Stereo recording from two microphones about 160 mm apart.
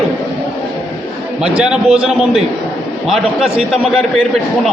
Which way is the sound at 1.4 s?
5° right (ahead or behind).